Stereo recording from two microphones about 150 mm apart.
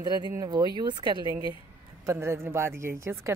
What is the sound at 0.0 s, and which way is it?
A woman's voice, 30° right (ahead or behind).